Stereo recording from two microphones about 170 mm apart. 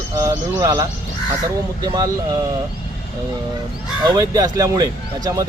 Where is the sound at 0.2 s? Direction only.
20° right (ahead or behind).